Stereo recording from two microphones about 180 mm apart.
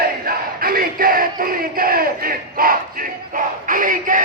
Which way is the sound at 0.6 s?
55° right (ahead or behind).